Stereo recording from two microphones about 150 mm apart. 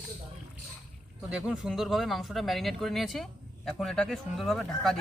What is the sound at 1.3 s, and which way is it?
Speech, 5° right (ahead or behind).